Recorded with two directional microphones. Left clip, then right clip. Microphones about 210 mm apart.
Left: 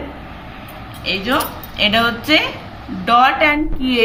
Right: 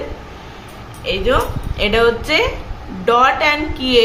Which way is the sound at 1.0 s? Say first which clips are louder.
Right 2 dB; 20° right (ahead or behind).